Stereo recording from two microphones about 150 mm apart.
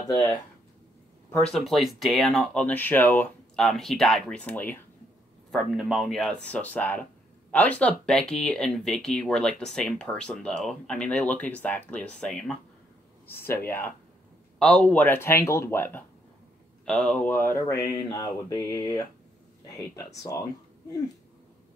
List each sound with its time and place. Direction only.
0.1 s speech: 25° left (ahead or behind)
1.3 s speech: 5° left (ahead or behind)
5.5 s speech: centre (ahead or behind); by 19.0 s 25° left (ahead or behind)
20.2 s speech: 20° left (ahead or behind)